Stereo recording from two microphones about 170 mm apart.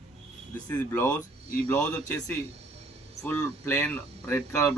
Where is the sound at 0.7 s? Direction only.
10° left (ahead or behind).